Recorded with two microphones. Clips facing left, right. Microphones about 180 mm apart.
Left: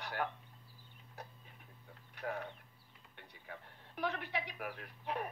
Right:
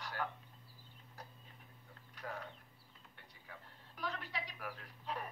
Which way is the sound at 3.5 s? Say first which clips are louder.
Left 5 dB; 65° left (ahead or behind).